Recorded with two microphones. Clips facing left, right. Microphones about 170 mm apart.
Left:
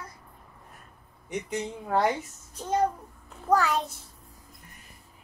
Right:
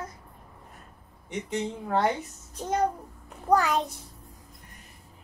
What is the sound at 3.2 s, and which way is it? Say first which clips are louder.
Speech: right 1 dB; 15° right (ahead or behind).